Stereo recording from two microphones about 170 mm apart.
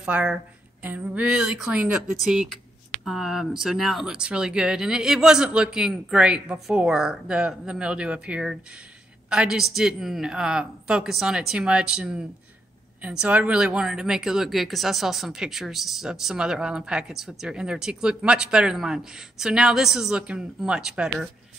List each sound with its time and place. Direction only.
0.0 s a woman's voice: 5° right (ahead or behind)